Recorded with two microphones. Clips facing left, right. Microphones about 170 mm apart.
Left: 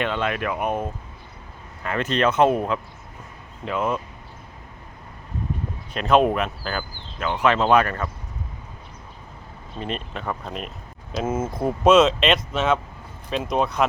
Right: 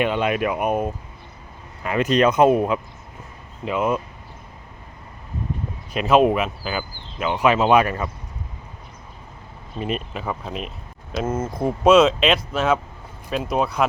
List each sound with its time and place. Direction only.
0.0 s speech: 15° right (ahead or behind)
5.9 s speech: 5° right (ahead or behind)
9.7 s speech: 5° right (ahead or behind)